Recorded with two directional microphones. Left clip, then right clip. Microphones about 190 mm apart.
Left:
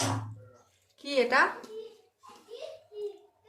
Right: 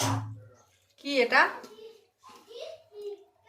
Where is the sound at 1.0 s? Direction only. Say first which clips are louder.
Right 2 dB; 15° left (ahead or behind).